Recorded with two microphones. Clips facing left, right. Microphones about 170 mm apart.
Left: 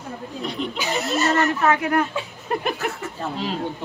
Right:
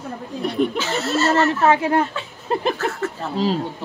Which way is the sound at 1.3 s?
25° right (ahead or behind).